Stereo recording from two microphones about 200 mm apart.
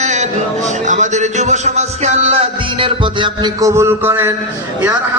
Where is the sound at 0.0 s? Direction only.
35° right (ahead or behind).